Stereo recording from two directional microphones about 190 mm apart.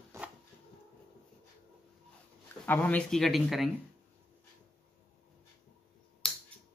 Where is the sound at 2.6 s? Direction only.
10° left (ahead or behind).